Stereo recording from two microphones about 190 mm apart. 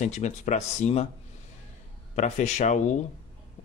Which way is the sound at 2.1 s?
35° left (ahead or behind).